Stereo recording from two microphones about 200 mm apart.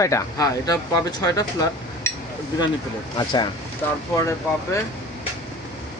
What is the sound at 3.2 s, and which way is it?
Speech, 20° left (ahead or behind).